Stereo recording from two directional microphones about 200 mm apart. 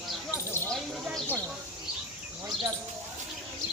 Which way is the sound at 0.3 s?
10° left (ahead or behind).